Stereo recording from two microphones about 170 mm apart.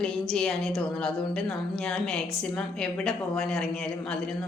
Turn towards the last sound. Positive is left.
turn(degrees=5)  # may be behind; listen again after turning